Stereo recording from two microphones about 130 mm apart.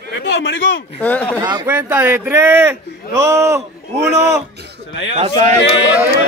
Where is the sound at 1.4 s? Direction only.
35° right (ahead or behind).